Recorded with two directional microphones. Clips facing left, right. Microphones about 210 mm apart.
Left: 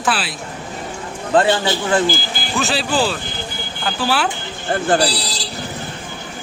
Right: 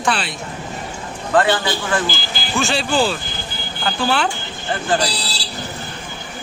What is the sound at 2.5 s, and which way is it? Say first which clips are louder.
Speech: right 1 dB; centre (ahead or behind).